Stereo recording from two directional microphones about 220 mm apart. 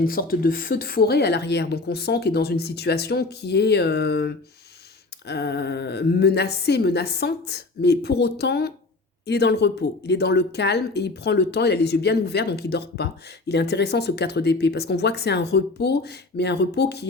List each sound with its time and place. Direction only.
0.0 s a woman's voice: 40° left (ahead or behind)